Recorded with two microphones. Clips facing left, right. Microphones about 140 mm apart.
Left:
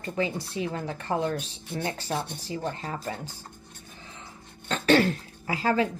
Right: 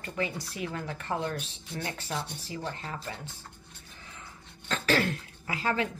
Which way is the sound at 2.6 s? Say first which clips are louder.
Left 4 dB; 40° left (ahead or behind).